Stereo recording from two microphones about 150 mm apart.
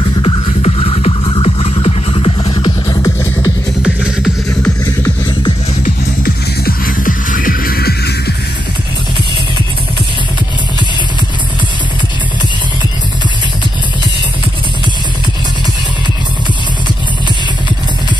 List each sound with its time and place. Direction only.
0.2 s music: 40° left (ahead or behind)
3.8 s music: 5° right (ahead or behind)
6.2 s music: 70° left (ahead or behind)